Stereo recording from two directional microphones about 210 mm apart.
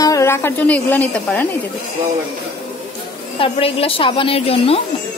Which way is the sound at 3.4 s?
25° left (ahead or behind).